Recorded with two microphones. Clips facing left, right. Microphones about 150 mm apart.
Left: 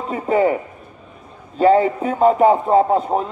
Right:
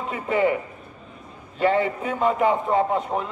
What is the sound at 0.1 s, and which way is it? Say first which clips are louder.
Speech: left 5 dB; 40° left (ahead or behind).